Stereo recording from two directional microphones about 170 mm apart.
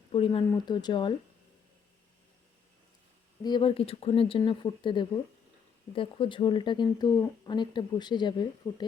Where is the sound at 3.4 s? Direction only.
30° left (ahead or behind).